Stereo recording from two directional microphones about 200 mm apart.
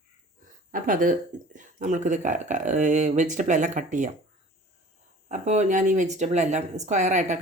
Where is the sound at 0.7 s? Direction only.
40° right (ahead or behind).